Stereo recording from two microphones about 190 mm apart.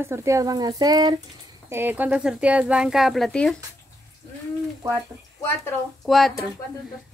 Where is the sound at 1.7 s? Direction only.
10° right (ahead or behind).